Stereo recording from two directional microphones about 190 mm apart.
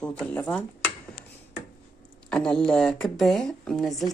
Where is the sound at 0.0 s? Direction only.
5° left (ahead or behind).